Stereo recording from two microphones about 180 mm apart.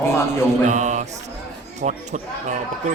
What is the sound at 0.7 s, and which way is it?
Mantra, 40° right (ahead or behind).